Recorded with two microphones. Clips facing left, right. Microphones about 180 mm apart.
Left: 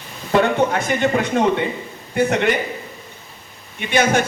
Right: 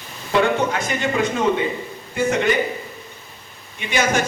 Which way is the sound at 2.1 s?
65° left (ahead or behind).